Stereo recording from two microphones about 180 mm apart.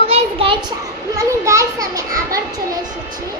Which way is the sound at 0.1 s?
30° right (ahead or behind).